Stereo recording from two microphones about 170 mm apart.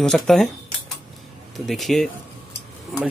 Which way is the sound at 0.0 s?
Centre (ahead or behind).